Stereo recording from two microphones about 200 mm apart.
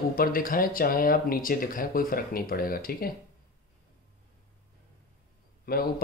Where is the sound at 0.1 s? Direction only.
45° left (ahead or behind).